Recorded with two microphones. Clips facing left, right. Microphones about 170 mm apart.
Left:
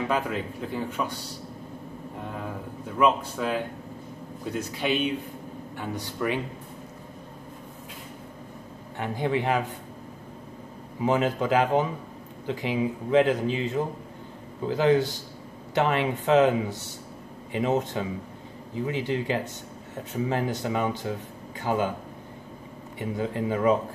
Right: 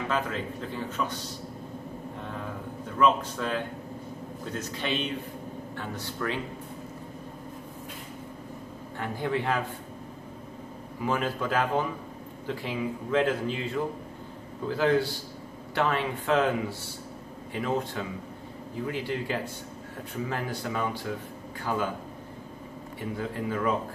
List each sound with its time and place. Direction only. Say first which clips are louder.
0.1 s speech: left 2 dB; 10° left (ahead or behind)
3.0 s speech: left 1 dB; 10° left (ahead or behind)
8.9 s speech: left 3 dB; 20° left (ahead or behind)
11.0 s speech: left 5 dB; 20° left (ahead or behind)
22.9 s speech: left 4 dB; 20° left (ahead or behind)